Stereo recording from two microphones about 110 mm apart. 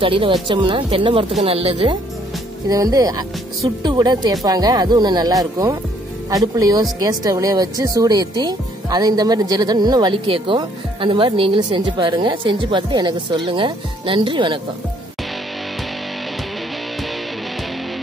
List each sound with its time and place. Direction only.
0.0 s speech: 55° right (ahead or behind)
2.7 s speech: 30° right (ahead or behind); by 14.6 s 50° right (ahead or behind)